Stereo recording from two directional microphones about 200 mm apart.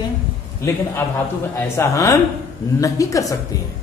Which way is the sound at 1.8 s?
15° left (ahead or behind).